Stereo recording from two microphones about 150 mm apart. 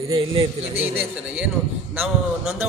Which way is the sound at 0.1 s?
35° right (ahead or behind).